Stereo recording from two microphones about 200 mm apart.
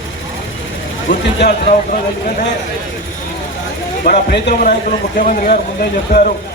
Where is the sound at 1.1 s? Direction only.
45° left (ahead or behind).